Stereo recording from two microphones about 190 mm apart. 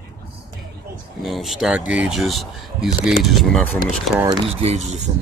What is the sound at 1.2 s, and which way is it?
Speech, centre (ahead or behind).